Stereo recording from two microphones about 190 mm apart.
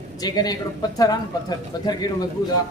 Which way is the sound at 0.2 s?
20° left (ahead or behind).